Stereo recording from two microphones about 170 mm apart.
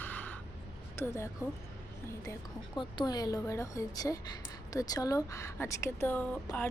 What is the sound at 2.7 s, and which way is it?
A woman's voice, 25° left (ahead or behind).